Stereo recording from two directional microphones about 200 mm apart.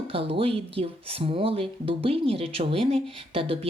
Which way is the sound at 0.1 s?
30° right (ahead or behind).